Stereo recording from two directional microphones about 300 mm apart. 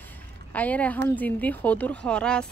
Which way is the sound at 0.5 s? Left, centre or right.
Centre.